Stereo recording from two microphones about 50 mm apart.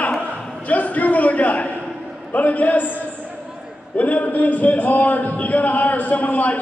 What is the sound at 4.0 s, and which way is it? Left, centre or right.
Speech, left.